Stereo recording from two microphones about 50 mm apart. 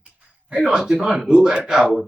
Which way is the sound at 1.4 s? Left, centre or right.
Centre.